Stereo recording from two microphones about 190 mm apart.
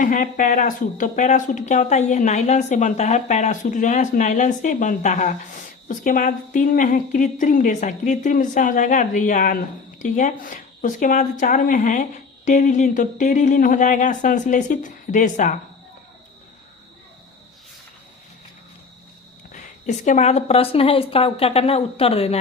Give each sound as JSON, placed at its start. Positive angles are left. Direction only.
{"t": 0.0, "sound": "a woman's voice", "side_deg": 45}
{"t": 19.5, "sound": "speech", "side_deg": 40}